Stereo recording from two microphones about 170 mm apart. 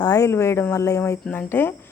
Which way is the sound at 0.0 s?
20° left (ahead or behind).